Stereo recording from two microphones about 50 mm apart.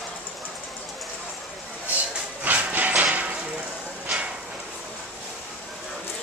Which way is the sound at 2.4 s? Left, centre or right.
Right.